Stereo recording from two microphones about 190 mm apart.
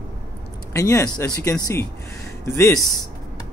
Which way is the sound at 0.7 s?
15° left (ahead or behind).